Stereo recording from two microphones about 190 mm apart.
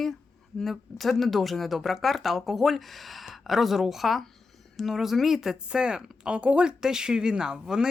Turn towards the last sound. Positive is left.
turn(degrees=-5)  # may be behind; listen again after turning